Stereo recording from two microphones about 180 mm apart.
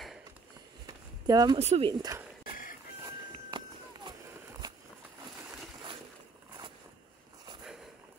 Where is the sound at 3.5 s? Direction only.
25° right (ahead or behind).